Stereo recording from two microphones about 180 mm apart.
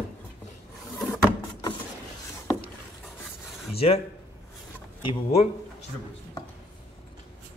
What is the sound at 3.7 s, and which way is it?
Speech, 35° left (ahead or behind).